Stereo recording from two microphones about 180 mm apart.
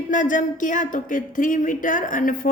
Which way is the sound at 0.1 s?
45° left (ahead or behind).